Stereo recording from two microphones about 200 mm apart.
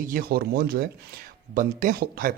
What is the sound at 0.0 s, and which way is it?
A man's voice, 45° right (ahead or behind).